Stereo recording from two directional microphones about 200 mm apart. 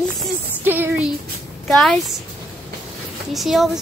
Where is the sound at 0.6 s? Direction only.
10° right (ahead or behind).